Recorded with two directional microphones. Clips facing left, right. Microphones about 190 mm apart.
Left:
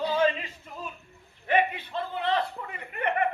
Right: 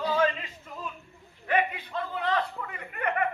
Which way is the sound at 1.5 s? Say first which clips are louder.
Left 2 dB; 25° left (ahead or behind).